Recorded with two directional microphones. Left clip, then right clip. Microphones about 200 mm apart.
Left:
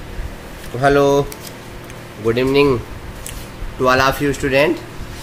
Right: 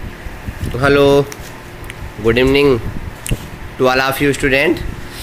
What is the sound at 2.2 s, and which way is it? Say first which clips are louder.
Speech: right 3 dB; 25° right (ahead or behind).